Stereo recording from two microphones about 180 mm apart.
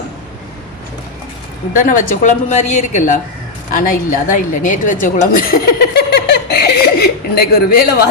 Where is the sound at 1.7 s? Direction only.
50° left (ahead or behind).